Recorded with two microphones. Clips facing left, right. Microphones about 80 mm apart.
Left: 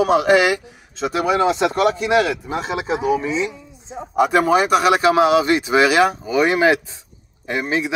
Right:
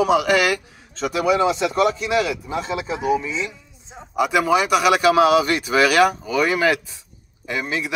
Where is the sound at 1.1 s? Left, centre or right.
Left.